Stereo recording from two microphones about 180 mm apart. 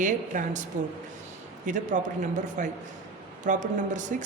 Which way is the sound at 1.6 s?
45° right (ahead or behind).